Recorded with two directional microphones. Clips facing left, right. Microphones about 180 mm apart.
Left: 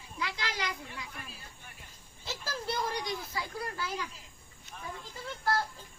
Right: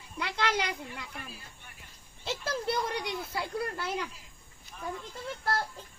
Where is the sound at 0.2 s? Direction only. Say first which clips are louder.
Right 6 dB; 60° right (ahead or behind).